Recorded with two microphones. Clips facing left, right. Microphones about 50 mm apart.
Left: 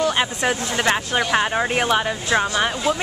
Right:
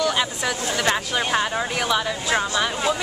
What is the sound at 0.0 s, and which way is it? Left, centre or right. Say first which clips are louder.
Speech: left 2 dB; left.